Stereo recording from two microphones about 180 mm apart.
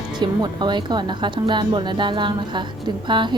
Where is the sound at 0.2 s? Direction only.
25° right (ahead or behind).